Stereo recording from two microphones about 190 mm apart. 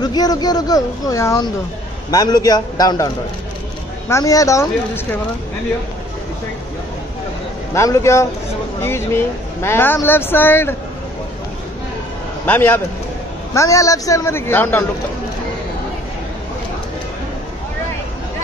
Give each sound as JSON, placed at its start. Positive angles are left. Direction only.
{"t": 0.0, "sound": "speech", "side_deg": 20}
{"t": 4.1, "sound": "speech", "side_deg": 20}
{"t": 7.7, "sound": "speech", "side_deg": 15}
{"t": 12.4, "sound": "speech", "side_deg": 10}